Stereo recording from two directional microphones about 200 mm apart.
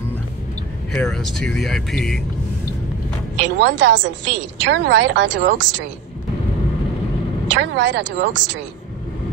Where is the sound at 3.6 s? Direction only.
60° right (ahead or behind).